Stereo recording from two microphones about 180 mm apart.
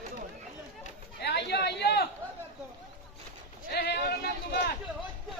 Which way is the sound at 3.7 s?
60° left (ahead or behind).